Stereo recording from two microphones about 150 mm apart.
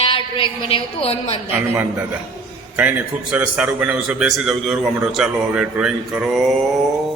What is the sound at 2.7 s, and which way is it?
A man's voice, 10° right (ahead or behind).